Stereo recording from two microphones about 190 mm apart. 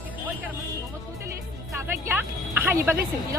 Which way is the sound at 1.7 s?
10° right (ahead or behind).